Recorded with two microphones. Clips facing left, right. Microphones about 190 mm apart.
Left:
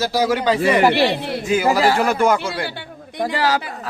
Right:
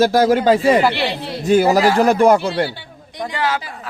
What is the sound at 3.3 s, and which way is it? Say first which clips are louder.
Speech: left 1 dB; 35° left (ahead or behind).